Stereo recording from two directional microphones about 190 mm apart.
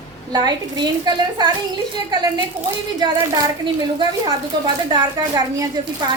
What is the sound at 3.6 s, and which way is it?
A woman's voice, 25° right (ahead or behind).